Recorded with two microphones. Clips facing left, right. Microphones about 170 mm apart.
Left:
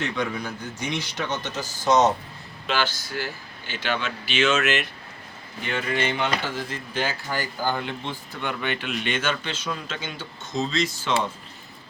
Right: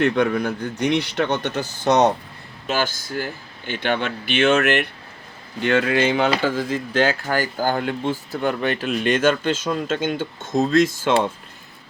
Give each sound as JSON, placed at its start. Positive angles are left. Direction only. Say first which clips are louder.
{"t": 0.0, "sound": "speech", "louder": "right 9 dB", "side_deg": -60}
{"t": 2.6, "sound": "speech", "louder": "right 3 dB", "side_deg": -45}
{"t": 5.6, "sound": "speech", "louder": "right 8 dB", "side_deg": -85}
{"t": 7.3, "sound": "speech", "louder": "right 5 dB", "side_deg": -50}